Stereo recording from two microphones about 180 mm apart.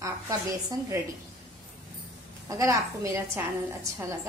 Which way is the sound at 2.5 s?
15° right (ahead or behind).